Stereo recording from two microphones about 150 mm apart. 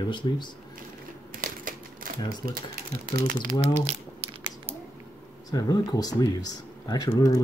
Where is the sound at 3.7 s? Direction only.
45° right (ahead or behind).